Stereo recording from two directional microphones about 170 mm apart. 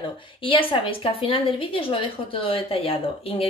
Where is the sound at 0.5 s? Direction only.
30° left (ahead or behind).